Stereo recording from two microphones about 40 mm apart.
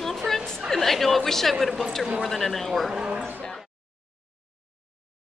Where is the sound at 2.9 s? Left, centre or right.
Centre.